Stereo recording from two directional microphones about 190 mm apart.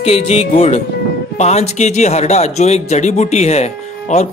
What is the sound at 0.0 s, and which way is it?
Speech, 35° left (ahead or behind).